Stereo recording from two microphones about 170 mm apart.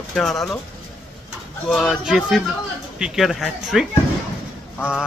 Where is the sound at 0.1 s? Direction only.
Centre (ahead or behind).